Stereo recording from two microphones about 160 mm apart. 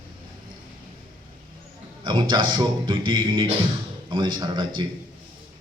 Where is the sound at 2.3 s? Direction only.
30° right (ahead or behind).